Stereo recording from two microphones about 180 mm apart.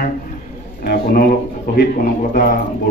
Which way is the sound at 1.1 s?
55° left (ahead or behind).